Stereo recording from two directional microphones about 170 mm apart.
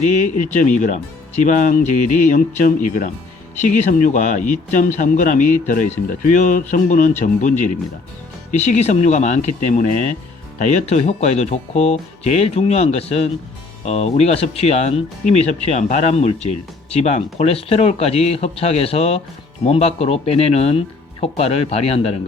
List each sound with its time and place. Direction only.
0.3 s speech: 50° left (ahead or behind)